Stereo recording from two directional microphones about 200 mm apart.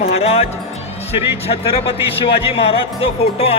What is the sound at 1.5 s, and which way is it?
Speech, 30° left (ahead or behind).